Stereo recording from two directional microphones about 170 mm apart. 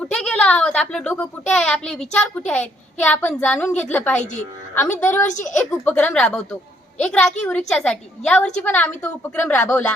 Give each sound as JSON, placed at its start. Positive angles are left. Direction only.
{"t": 0.0, "sound": "a child's voice", "side_deg": 5}
{"t": 4.2, "sound": "a woman's voice", "side_deg": 45}
{"t": 4.9, "sound": "a woman's voice", "side_deg": 10}
{"t": 5.2, "sound": "a woman's voice", "side_deg": 45}
{"t": 5.8, "sound": "a woman's voice", "side_deg": 10}